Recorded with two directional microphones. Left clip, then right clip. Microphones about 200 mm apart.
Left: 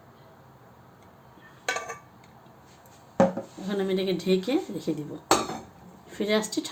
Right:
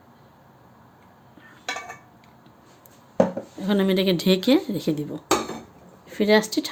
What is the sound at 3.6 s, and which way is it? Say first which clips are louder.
Speech: right 6 dB; 40° right (ahead or behind).